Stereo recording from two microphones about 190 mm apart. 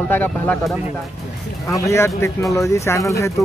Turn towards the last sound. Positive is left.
turn(degrees=15)  # may be behind; listen again after turning